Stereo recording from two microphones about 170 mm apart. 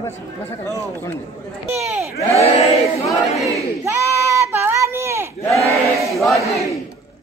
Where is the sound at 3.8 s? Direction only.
15° right (ahead or behind).